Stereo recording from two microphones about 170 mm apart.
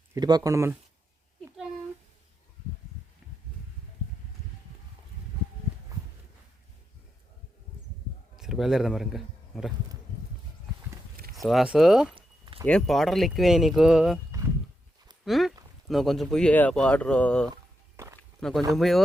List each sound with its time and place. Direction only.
0.1 s speech: 25° right (ahead or behind)
8.4 s speech: 5° right (ahead or behind)
11.4 s speech: 5° right (ahead or behind)
15.2 s a sound: centre (ahead or behind)
15.9 s speech: centre (ahead or behind)
17.9 s walk: 15° right (ahead or behind)
18.2 s a sound: 5° left (ahead or behind)
18.7 s speech: centre (ahead or behind)